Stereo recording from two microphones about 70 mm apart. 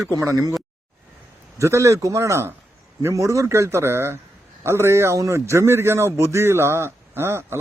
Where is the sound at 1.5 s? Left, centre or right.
Right.